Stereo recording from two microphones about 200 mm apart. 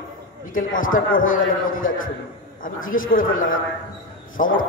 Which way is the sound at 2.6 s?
45° left (ahead or behind).